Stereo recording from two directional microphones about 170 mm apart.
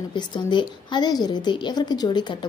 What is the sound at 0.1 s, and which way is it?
A woman's voice, 25° left (ahead or behind).